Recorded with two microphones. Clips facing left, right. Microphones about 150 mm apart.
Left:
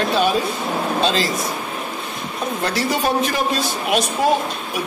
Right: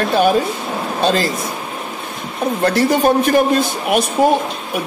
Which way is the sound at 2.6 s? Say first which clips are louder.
Right 7 dB; 55° right (ahead or behind).